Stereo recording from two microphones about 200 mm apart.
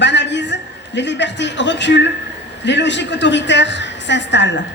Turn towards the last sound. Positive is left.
turn(degrees=60)  # may be behind; listen again after turning